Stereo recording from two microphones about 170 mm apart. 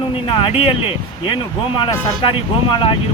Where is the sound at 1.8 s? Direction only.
30° left (ahead or behind).